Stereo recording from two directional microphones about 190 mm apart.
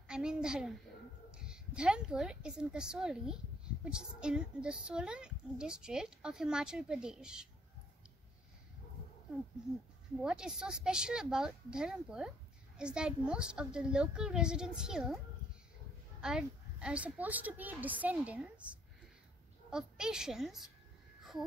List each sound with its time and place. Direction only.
0.1 s a child's voice: 5° right (ahead or behind)
10.2 s a child's voice: 5° right (ahead or behind)
16.2 s a woman's voice: 5° right (ahead or behind)
21.2 s a sound: centre (ahead or behind)